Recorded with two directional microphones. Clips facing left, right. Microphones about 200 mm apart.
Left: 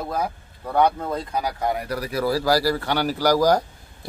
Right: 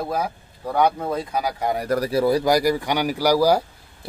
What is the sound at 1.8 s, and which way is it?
Speech, 40° right (ahead or behind).